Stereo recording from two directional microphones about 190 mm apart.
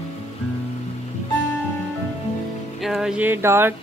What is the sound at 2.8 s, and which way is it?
Speech, centre (ahead or behind).